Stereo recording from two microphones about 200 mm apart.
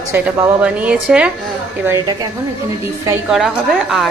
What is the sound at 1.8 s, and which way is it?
Speech, 15° right (ahead or behind).